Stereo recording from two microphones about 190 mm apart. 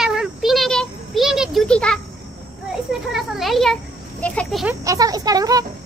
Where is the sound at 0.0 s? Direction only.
Centre (ahead or behind).